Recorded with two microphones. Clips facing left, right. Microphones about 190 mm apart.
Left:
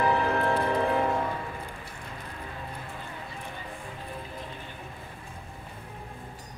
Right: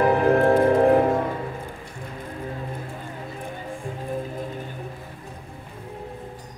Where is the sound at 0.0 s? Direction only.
50° right (ahead or behind).